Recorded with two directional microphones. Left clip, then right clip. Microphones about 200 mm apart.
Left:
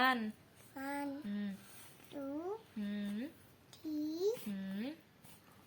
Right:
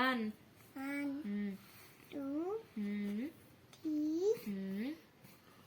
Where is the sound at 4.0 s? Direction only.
35° left (ahead or behind).